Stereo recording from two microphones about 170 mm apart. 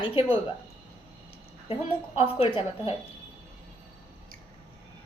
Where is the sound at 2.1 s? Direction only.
35° left (ahead or behind).